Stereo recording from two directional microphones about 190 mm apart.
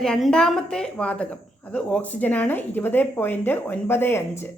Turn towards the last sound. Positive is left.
turn(degrees=10)  # may be behind; listen again after turning